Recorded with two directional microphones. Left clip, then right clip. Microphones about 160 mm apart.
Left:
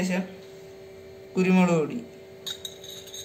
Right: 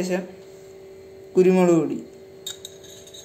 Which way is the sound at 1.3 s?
65° right (ahead or behind).